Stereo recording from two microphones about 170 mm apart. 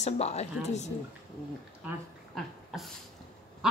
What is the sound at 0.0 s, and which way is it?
Speech, 40° left (ahead or behind).